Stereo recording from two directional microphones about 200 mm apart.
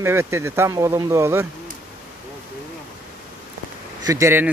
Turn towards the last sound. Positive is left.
turn(degrees=-15)  # may be behind; listen again after turning